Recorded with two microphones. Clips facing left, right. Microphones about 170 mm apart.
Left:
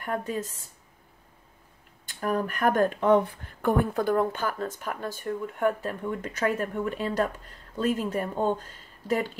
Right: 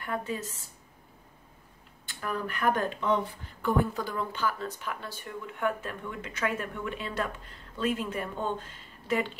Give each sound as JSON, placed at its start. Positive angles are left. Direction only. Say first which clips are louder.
{"t": 0.0, "sound": "speech", "louder": "left 3 dB", "side_deg": 40}
{"t": 2.0, "sound": "speech", "louder": "left 6 dB", "side_deg": 45}